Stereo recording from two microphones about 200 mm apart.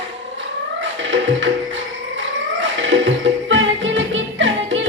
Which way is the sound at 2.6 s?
65° right (ahead or behind).